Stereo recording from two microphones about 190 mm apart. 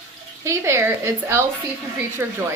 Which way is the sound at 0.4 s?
15° right (ahead or behind).